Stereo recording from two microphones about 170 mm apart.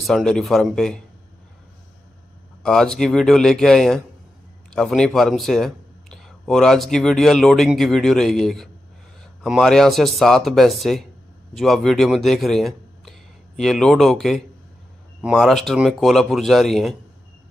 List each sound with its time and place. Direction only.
0.0 s speech: centre (ahead or behind)
2.6 s speech: 5° left (ahead or behind)